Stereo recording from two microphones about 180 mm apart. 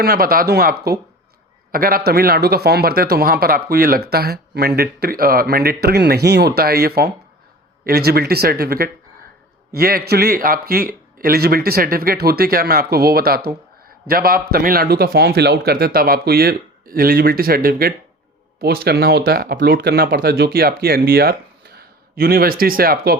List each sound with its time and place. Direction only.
0.0 s speech: 55° right (ahead or behind)